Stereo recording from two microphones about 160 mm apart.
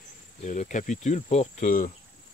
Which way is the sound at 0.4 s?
50° left (ahead or behind).